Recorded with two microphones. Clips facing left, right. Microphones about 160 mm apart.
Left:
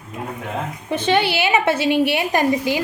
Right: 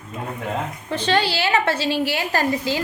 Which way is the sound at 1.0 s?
20° left (ahead or behind).